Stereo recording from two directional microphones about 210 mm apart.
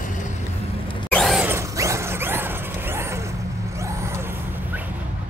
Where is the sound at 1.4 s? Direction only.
15° right (ahead or behind).